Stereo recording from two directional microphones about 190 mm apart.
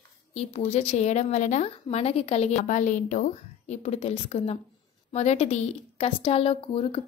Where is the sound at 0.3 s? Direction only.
35° left (ahead or behind).